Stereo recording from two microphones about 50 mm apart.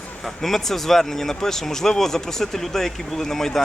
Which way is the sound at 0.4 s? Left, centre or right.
Centre.